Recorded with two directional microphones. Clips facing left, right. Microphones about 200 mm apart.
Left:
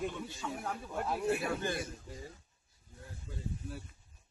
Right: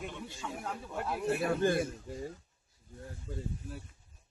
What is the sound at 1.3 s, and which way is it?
Speech, 45° right (ahead or behind).